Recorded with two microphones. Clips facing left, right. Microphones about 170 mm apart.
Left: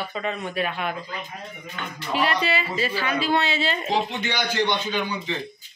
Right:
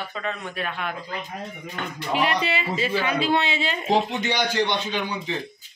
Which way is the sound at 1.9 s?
15° right (ahead or behind).